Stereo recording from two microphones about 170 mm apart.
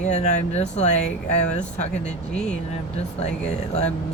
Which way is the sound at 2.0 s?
5° left (ahead or behind).